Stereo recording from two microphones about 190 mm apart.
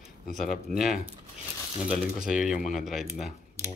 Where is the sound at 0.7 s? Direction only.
45° left (ahead or behind).